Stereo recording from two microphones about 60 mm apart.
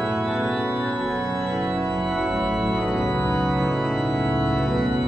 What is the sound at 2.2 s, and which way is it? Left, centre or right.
Organ, centre.